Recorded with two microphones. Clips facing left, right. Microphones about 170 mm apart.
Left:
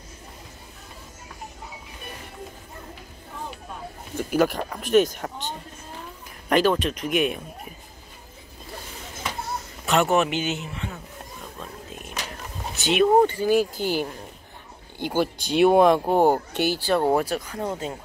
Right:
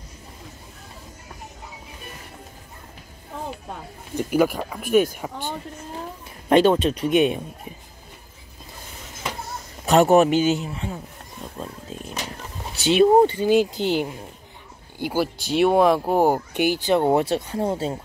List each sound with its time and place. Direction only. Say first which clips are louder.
4.2 s speech: right 2 dB; 10° right (ahead or behind)
6.5 s speech: right 4 dB; 25° right (ahead or behind)
9.8 s speech: right 6 dB; 40° right (ahead or behind)
11.5 s wild animals: right 6 dB; 30° right (ahead or behind)
12.7 s speech: right 3 dB; 30° right (ahead or behind)
15.0 s speech: even; 5° right (ahead or behind); by 17.9 s 30° right (ahead or behind)